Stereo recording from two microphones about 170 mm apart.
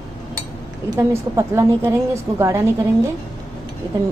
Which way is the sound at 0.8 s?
15° right (ahead or behind).